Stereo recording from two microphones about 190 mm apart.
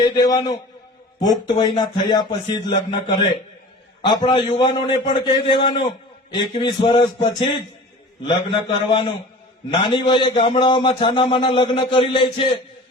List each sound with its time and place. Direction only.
0.0 s a man's voice: 20° left (ahead or behind)
8.9 s a man's voice: 25° left (ahead or behind)